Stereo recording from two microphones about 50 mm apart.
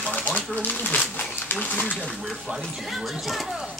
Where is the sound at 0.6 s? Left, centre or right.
Left.